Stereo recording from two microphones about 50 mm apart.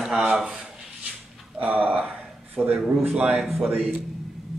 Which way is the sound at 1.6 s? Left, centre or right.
Right.